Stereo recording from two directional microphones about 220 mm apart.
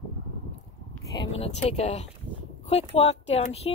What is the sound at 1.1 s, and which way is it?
Speech, 25° left (ahead or behind).